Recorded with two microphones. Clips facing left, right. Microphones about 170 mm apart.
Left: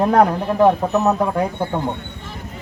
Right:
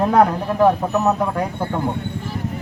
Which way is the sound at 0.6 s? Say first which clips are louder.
Left 1 dB; centre (ahead or behind).